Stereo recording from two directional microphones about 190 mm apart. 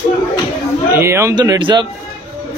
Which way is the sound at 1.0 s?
15° right (ahead or behind).